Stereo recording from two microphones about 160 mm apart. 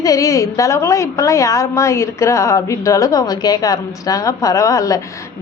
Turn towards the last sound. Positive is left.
turn(degrees=20)  # may be behind; listen again after turning